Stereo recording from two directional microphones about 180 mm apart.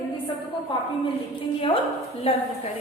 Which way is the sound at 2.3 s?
35° left (ahead or behind).